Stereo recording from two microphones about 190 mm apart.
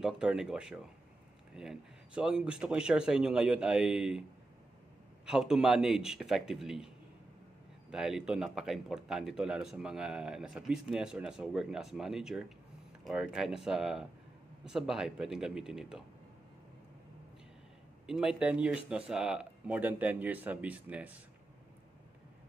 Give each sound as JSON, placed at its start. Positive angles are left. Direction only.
{"t": 0.0, "sound": "speech", "side_deg": -5}
{"t": 5.2, "sound": "speech", "side_deg": -5}
{"t": 7.9, "sound": "speech", "side_deg": -5}
{"t": 18.0, "sound": "speech", "side_deg": -5}